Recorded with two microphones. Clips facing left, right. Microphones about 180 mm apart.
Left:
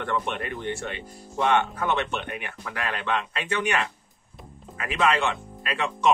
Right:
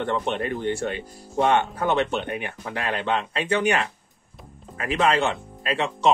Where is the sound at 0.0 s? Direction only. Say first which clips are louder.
Right 4 dB; 30° right (ahead or behind).